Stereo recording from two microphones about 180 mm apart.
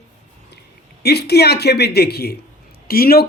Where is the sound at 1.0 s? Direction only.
65° left (ahead or behind).